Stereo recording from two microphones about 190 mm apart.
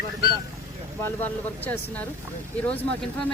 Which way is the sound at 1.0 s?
10° left (ahead or behind).